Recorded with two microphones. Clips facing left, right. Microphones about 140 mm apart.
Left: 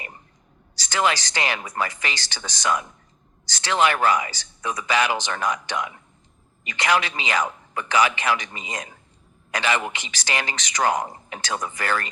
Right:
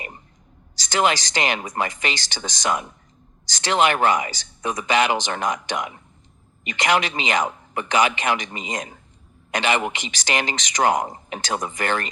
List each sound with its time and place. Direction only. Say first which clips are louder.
0.9 s a man's voice: right 2 dB; 20° right (ahead or behind)